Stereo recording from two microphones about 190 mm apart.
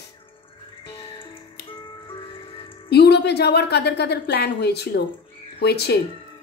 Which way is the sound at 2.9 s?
60° left (ahead or behind).